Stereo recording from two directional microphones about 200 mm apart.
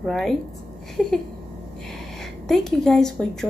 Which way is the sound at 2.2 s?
Centre (ahead or behind).